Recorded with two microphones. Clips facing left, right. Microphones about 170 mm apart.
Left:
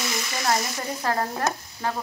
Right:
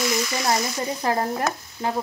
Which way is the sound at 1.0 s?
15° right (ahead or behind).